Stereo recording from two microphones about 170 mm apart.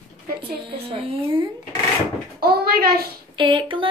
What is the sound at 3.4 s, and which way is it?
Speech, 30° right (ahead or behind).